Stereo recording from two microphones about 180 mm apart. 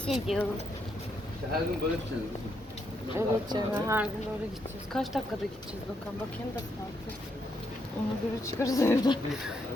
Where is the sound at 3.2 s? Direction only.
15° right (ahead or behind).